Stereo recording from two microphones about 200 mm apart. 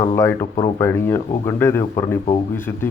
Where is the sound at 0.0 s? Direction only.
15° left (ahead or behind).